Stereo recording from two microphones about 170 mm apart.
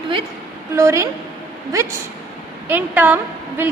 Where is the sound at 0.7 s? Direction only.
15° right (ahead or behind).